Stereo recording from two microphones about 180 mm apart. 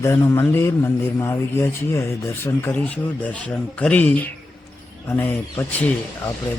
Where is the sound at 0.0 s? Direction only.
15° left (ahead or behind).